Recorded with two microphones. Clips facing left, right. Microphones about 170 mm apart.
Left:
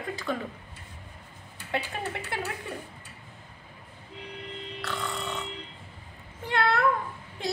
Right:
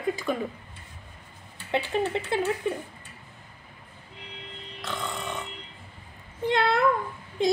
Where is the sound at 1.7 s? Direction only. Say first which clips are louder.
Right 6 dB; 20° right (ahead or behind).